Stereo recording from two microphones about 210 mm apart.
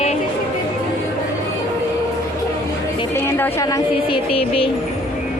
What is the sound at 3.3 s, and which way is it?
Speech, 10° left (ahead or behind).